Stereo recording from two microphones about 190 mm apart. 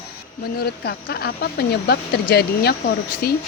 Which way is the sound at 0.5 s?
55° left (ahead or behind).